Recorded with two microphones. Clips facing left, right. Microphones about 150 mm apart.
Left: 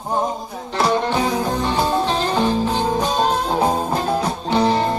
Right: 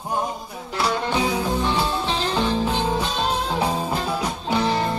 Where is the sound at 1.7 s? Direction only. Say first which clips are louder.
Left 4 dB; 40° left (ahead or behind).